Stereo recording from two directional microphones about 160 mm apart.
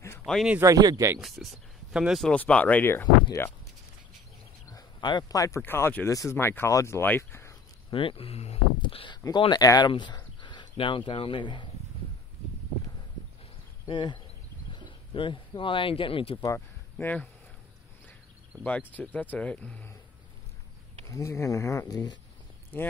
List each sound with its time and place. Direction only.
0.2 s speech: centre (ahead or behind)
0.6 s speech: 20° right (ahead or behind)
1.2 s speech: centre (ahead or behind); by 3.5 s 15° left (ahead or behind)
4.6 s speech: 25° left (ahead or behind)
7.9 s speech: 35° left (ahead or behind)
13.8 s speech: 30° left (ahead or behind)
16.3 s speech: 15° left (ahead or behind)
18.6 s speech: 10° left (ahead or behind)
21.1 s speech: 20° left (ahead or behind)
22.7 s speech: 10° left (ahead or behind)